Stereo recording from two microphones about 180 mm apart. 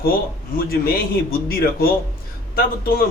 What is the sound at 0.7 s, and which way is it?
A man's voice, 55° left (ahead or behind).